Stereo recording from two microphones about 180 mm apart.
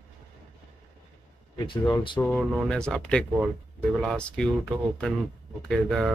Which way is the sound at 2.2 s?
5° left (ahead or behind).